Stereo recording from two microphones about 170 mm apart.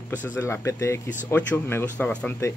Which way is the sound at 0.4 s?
15° left (ahead or behind).